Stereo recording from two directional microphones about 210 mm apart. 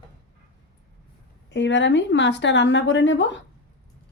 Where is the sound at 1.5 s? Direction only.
60° left (ahead or behind).